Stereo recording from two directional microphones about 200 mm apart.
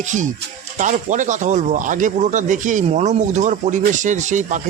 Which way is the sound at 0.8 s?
40° right (ahead or behind).